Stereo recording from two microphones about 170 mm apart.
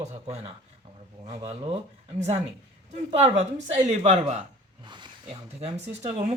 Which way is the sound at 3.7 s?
40° right (ahead or behind).